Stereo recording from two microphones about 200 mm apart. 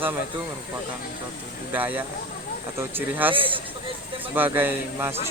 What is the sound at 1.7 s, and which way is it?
Speech, 10° right (ahead or behind).